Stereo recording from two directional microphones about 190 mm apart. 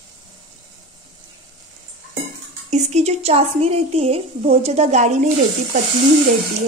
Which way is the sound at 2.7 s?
35° right (ahead or behind).